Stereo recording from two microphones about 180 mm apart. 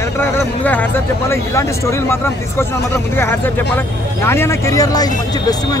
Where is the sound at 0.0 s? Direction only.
15° left (ahead or behind).